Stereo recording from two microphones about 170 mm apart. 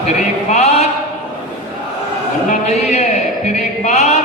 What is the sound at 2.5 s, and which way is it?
A man's voice, 40° left (ahead or behind).